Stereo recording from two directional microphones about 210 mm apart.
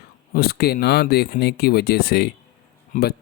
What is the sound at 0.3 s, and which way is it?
Speech, 45° left (ahead or behind).